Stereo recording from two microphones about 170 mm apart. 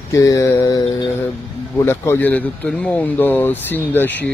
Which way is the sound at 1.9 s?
10° left (ahead or behind).